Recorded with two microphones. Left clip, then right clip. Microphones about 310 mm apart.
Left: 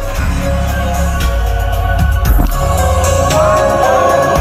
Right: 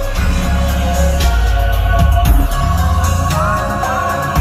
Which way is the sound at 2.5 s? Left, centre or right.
Centre.